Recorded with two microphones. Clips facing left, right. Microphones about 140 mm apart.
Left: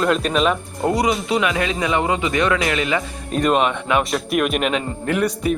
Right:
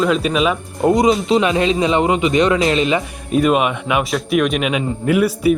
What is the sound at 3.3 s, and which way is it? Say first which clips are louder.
A man's voice: right 3 dB; 5° right (ahead or behind).